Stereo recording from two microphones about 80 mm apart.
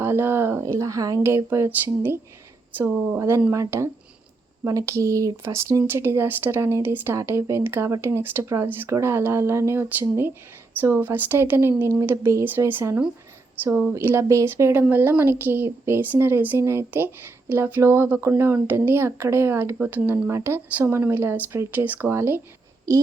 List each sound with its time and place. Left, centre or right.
0.0 s speech: right
1.2 s speech: right
14.4 s speech: right
21.7 s speech: right
22.1 s speech: right